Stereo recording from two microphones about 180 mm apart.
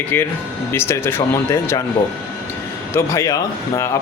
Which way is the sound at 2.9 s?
15° left (ahead or behind).